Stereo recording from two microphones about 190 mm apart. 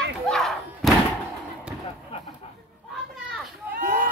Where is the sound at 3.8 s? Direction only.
45° right (ahead or behind).